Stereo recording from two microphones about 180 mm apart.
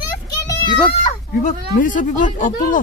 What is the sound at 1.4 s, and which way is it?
Speech, 45° left (ahead or behind).